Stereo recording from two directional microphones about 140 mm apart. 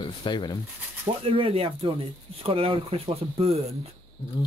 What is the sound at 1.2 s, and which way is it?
Speech, 40° right (ahead or behind).